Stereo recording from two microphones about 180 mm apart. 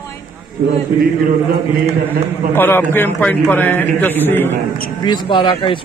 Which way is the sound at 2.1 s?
10° left (ahead or behind).